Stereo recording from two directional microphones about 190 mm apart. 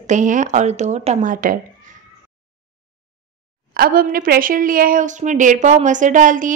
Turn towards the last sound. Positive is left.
turn(degrees=-45)  # may be behind; listen again after turning